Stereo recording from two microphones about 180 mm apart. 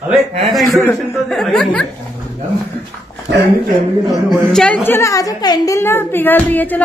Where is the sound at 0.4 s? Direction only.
Centre (ahead or behind).